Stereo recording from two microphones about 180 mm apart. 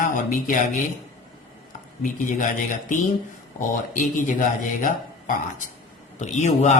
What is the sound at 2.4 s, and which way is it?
Speech, 45° left (ahead or behind).